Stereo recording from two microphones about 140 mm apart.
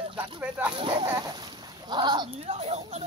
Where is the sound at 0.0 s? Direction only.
35° right (ahead or behind).